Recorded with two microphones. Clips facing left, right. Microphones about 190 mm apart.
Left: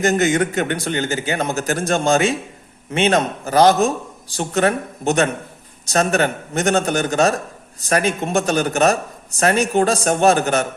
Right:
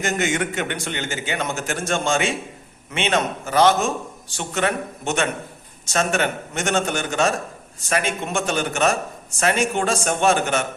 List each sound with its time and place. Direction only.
0.0 s a man's voice: 40° left (ahead or behind)